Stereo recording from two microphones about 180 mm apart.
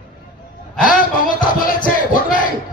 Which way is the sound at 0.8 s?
50° left (ahead or behind).